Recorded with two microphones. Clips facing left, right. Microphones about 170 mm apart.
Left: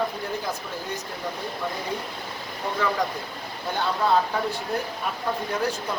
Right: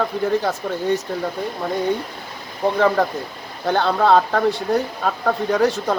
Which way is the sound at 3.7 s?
70° right (ahead or behind).